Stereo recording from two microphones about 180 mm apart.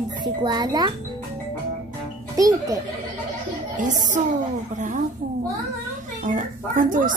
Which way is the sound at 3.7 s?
45° right (ahead or behind).